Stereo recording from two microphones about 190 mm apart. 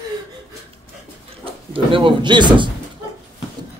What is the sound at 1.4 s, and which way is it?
Speech, 30° right (ahead or behind).